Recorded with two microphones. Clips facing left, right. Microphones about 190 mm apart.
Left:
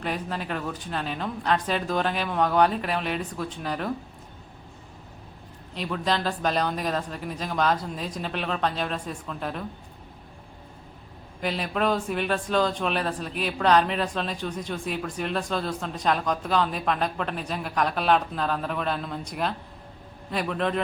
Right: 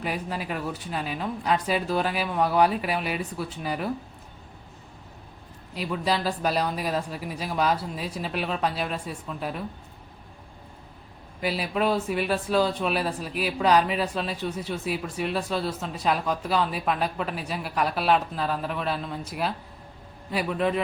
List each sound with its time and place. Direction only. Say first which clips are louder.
0.0 s speech: even; 10° right (ahead or behind)
5.7 s speech: even; 10° right (ahead or behind)
11.3 s a man's voice: right 1 dB; 5° right (ahead or behind)